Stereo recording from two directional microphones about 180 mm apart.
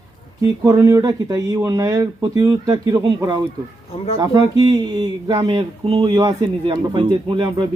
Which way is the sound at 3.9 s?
35° left (ahead or behind).